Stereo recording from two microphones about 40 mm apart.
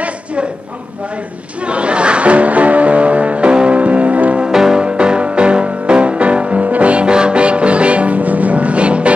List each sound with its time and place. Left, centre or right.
0.0 s a sound: right
1.6 s music: right
4.5 s music: centre
4.8 s music: right